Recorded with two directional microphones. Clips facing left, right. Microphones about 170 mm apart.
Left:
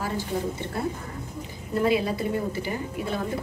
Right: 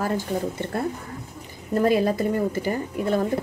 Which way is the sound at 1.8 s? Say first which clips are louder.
Right 3 dB; 45° right (ahead or behind).